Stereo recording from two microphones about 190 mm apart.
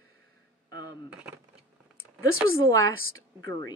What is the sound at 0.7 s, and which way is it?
Speech, 60° right (ahead or behind).